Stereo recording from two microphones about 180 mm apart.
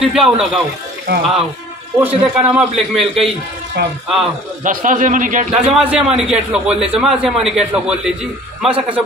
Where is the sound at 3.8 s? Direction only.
65° right (ahead or behind).